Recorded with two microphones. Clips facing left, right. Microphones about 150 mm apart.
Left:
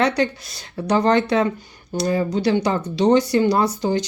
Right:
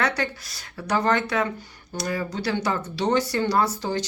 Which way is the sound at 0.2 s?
25° left (ahead or behind).